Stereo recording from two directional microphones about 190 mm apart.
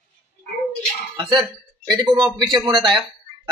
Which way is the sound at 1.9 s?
20° right (ahead or behind).